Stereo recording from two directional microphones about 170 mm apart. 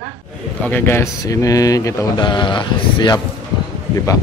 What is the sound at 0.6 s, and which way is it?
Speech, 10° left (ahead or behind).